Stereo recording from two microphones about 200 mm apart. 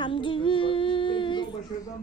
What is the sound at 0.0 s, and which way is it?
Female singing, 25° left (ahead or behind).